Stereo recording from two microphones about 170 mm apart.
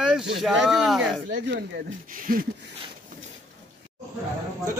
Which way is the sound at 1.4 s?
75° right (ahead or behind).